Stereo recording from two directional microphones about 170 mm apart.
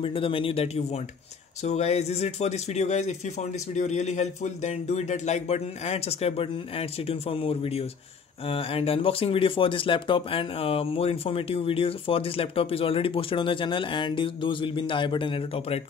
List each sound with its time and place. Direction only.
0.0 s speech: 30° left (ahead or behind)